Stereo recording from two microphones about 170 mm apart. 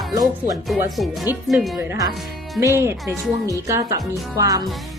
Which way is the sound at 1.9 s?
20° right (ahead or behind).